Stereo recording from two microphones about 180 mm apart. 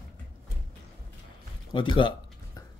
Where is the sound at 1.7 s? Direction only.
25° left (ahead or behind).